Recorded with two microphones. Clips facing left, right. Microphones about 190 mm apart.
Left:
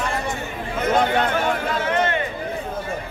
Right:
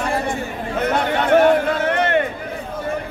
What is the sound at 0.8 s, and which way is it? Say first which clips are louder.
Chatter: left 1 dB; 65° right (ahead or behind).